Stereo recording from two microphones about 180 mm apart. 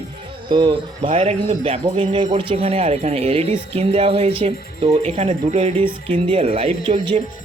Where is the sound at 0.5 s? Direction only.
25° right (ahead or behind).